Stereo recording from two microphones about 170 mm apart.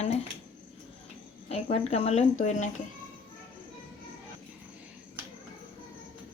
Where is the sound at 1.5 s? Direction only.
40° left (ahead or behind).